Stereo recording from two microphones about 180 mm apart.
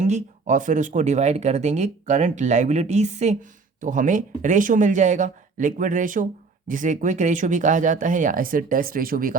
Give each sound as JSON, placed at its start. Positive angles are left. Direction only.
{"t": 0.0, "sound": "speech", "side_deg": -45}